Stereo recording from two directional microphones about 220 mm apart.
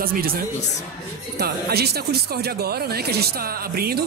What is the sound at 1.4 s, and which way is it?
Speech, 45° right (ahead or behind).